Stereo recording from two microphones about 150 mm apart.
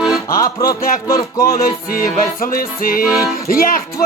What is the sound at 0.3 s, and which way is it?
Music, 25° left (ahead or behind).